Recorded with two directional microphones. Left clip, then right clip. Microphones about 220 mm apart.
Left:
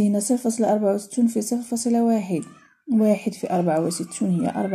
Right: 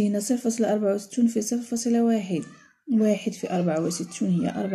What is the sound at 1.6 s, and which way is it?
Speech, 20° right (ahead or behind).